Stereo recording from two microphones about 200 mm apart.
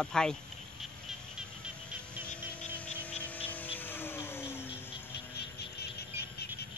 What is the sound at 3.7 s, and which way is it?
Vehicle, 10° left (ahead or behind).